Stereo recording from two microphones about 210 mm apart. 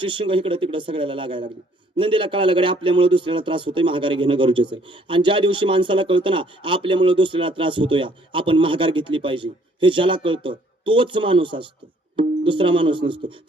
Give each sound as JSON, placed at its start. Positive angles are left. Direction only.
{"t": 0.0, "sound": "speech", "side_deg": -25}